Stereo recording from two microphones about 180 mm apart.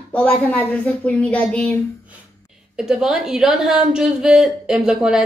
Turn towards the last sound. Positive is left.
turn(degrees=-5)  # may be behind; listen again after turning